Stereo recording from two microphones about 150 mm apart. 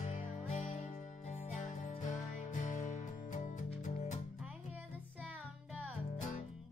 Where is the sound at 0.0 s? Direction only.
50° left (ahead or behind).